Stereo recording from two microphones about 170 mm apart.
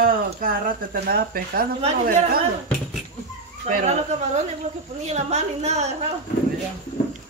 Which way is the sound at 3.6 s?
45° right (ahead or behind).